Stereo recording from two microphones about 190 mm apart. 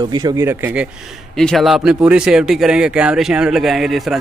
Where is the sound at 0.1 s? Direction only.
20° right (ahead or behind).